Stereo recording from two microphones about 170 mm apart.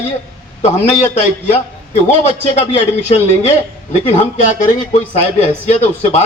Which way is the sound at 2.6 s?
40° left (ahead or behind).